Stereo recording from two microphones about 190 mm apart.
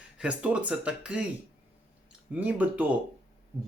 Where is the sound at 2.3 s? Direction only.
10° right (ahead or behind).